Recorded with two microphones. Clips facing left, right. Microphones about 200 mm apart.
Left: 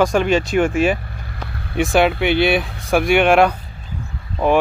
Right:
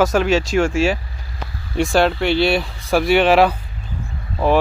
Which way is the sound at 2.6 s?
Centre (ahead or behind).